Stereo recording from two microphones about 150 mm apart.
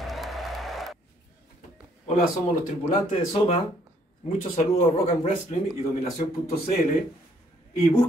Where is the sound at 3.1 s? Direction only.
40° left (ahead or behind).